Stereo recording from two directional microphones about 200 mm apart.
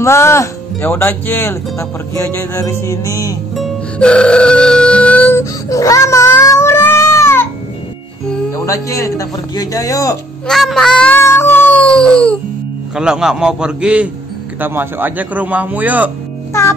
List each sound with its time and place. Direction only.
0.0 s speech: 15° left (ahead or behind)
3.5 s music: 5° left (ahead or behind)
8.6 s speech: 15° left (ahead or behind)
10.4 s a sound: centre (ahead or behind)
14.6 s a man's voice: 10° right (ahead or behind)